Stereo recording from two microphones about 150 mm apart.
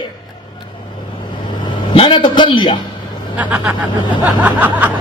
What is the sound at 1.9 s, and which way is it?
Speech, 35° left (ahead or behind).